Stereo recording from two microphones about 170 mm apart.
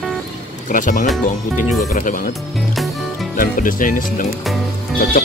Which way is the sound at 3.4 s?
55° left (ahead or behind).